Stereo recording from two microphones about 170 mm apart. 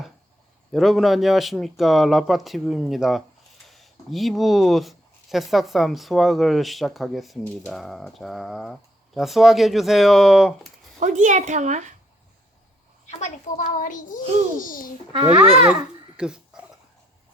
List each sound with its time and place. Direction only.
0.7 s speech: centre (ahead or behind)
11.0 s a woman's voice: 45° right (ahead or behind)
13.1 s a child's voice: 45° left (ahead or behind)
15.1 s a child's voice: 30° right (ahead or behind)
15.6 s babbling: 5° right (ahead or behind)